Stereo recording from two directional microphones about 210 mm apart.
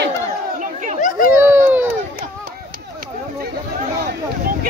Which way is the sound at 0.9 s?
40° left (ahead or behind).